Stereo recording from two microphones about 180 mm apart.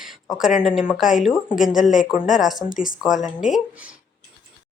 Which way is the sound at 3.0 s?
Centre (ahead or behind).